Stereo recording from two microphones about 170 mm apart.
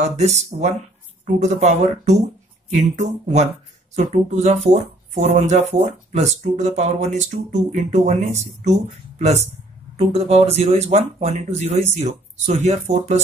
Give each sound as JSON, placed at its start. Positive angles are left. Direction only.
{"t": 0.0, "sound": "speech", "side_deg": -40}